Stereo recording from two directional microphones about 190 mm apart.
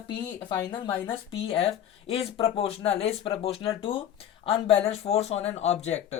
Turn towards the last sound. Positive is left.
turn(degrees=35)  # may be behind; listen again after turning